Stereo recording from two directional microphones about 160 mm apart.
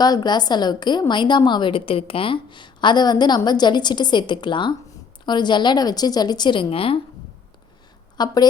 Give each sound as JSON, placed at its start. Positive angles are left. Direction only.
{"t": 0.0, "sound": "a woman's voice", "side_deg": 25}
{"t": 8.2, "sound": "a woman's voice", "side_deg": 25}